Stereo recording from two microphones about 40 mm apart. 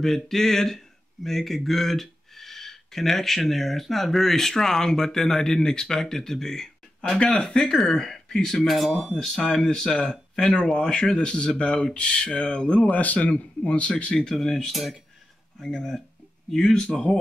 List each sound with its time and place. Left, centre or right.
0.0 s speech: centre
7.2 s speech: left
7.6 s speech: centre
9.3 s speech: centre
12.9 s a man's voice: left; by 14.7 s centre
14.7 s speech: centre